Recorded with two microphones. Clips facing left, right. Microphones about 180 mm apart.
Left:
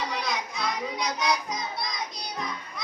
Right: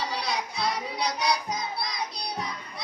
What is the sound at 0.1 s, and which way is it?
Music, 30° right (ahead or behind).